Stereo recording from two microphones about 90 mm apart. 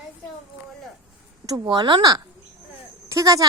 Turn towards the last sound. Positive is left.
turn(degrees=-40)  # may be behind; listen again after turning